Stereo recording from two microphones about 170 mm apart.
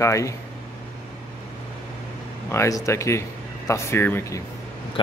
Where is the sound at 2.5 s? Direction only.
15° left (ahead or behind).